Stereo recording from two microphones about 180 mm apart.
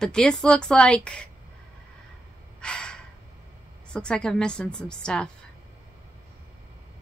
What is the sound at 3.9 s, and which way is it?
A woman's voice, 5° left (ahead or behind).